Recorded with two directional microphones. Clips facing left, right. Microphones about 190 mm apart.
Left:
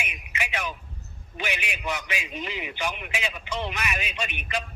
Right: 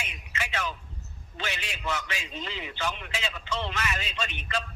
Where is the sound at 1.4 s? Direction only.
15° left (ahead or behind).